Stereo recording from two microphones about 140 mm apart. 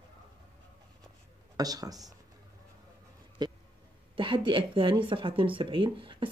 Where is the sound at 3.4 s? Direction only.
30° right (ahead or behind).